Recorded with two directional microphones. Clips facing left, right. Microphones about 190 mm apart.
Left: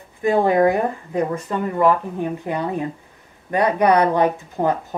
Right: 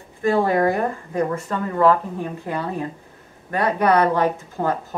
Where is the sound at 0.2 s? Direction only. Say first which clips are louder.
Left 2 dB; 20° left (ahead or behind).